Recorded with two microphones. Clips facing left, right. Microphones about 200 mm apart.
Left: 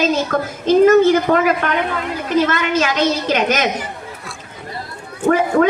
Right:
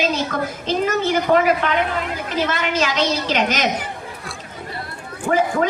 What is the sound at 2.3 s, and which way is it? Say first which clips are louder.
A woman's voice: left 5 dB; 50° left (ahead or behind).